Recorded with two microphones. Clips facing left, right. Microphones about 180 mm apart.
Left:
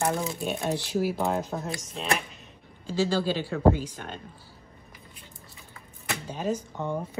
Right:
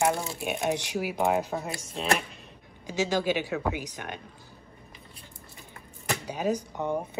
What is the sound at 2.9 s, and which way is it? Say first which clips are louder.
Speech: left 1 dB; 15° right (ahead or behind).